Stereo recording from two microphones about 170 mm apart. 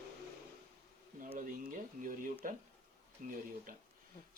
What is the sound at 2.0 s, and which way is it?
Speech, 50° right (ahead or behind).